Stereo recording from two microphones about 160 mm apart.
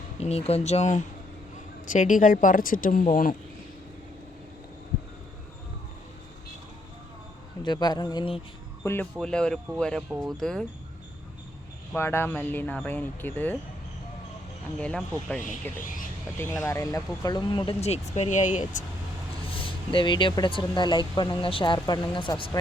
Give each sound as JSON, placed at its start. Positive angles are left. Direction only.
{"t": 0.2, "sound": "speech", "side_deg": 40}
{"t": 7.6, "sound": "speech", "side_deg": 25}
{"t": 8.8, "sound": "speech", "side_deg": 15}
{"t": 9.2, "sound": "speech", "side_deg": 5}
{"t": 11.9, "sound": "speech", "side_deg": 15}
{"t": 14.8, "sound": "speech", "side_deg": 5}
{"t": 15.8, "sound": "speech", "side_deg": 55}
{"t": 16.4, "sound": "speech", "side_deg": 10}
{"t": 17.7, "sound": "speech", "side_deg": 45}
{"t": 19.5, "sound": "speech", "side_deg": 35}